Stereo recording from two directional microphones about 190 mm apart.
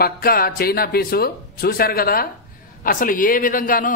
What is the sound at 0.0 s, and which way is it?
A man's voice, 50° left (ahead or behind).